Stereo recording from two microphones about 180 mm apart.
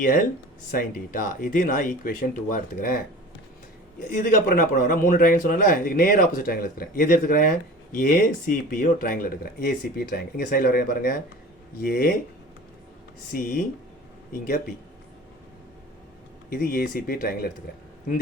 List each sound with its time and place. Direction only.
0.7 s speech: 50° left (ahead or behind)
4.0 s speech: 50° left (ahead or behind)
13.3 s speech: 55° left (ahead or behind)
16.5 s speech: 55° left (ahead or behind)